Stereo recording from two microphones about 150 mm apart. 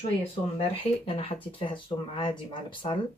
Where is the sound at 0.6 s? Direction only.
40° left (ahead or behind).